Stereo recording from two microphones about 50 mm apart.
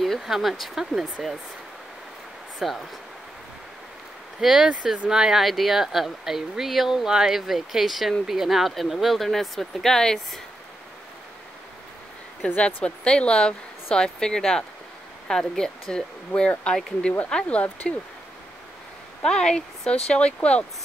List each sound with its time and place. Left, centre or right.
0.2 s speech: centre
2.6 s speech: centre
4.4 s speech: centre
5.4 s speech: centre
12.4 s speech: left
17.6 s speech: left
19.2 s speech: centre